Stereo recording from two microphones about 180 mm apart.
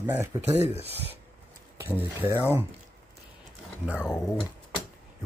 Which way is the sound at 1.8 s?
10° right (ahead or behind).